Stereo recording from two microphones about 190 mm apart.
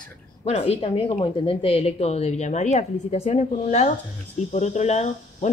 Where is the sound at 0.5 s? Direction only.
30° left (ahead or behind).